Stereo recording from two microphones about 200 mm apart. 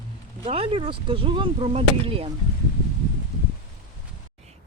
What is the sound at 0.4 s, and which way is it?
Speech, 30° right (ahead or behind).